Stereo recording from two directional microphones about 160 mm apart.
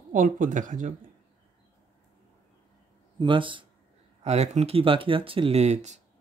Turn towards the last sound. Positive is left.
turn(degrees=-45)  # may be behind; listen again after turning